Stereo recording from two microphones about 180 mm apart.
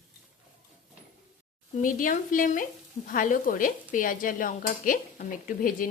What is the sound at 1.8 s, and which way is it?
Speech, 50° left (ahead or behind).